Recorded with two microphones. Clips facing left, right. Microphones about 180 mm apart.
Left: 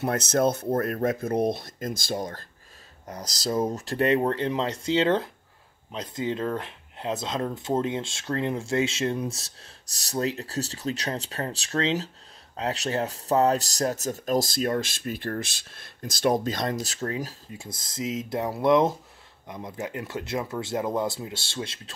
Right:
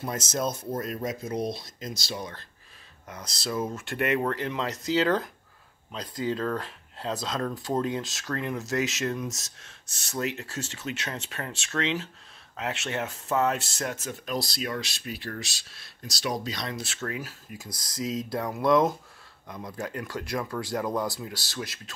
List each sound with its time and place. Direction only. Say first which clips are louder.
0.0 s speech: left 7 dB; 65° left (ahead or behind); by 21.9 s 25° left (ahead or behind)